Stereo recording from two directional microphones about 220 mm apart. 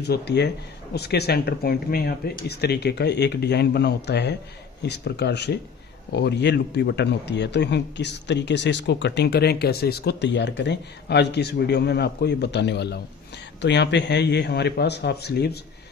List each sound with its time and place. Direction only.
0.0 s a man's voice: 50° left (ahead or behind)